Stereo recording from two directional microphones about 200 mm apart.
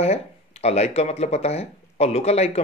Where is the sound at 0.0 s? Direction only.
30° left (ahead or behind).